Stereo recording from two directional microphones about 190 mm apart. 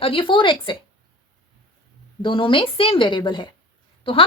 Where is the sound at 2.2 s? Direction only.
25° left (ahead or behind).